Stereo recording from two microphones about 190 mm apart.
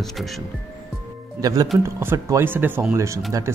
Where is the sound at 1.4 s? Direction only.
20° right (ahead or behind).